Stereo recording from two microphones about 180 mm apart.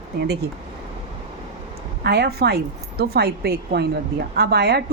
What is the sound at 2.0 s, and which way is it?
A woman's voice, 65° right (ahead or behind).